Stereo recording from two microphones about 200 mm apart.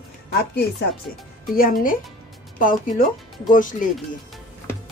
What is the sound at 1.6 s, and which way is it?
Speech, 45° left (ahead or behind).